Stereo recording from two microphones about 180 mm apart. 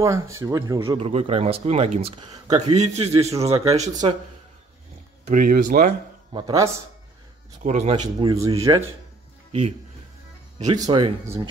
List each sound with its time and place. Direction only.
0.0 s speech: 15° right (ahead or behind); by 4.0 s 40° right (ahead or behind)
5.2 s speech: 50° right (ahead or behind)
6.3 s speech: 20° right (ahead or behind)
7.6 s speech: 40° right (ahead or behind)
8.2 s speech: 25° right (ahead or behind)
9.5 s speech: 35° right (ahead or behind)
10.6 s speech: 25° right (ahead or behind)